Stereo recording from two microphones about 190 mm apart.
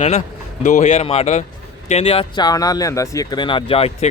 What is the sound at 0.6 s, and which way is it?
Speech, 45° left (ahead or behind).